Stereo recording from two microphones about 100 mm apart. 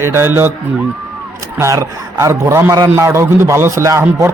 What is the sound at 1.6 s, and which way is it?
A man's voice, 30° right (ahead or behind).